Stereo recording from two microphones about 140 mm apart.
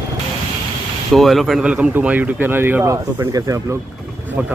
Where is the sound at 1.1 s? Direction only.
Centre (ahead or behind); by 3.8 s 20° right (ahead or behind).